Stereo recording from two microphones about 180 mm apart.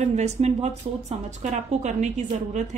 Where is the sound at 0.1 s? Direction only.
40° right (ahead or behind).